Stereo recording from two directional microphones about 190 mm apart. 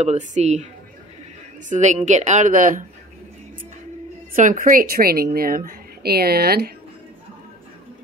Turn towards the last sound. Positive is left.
turn(degrees=-55)  # may be behind; listen again after turning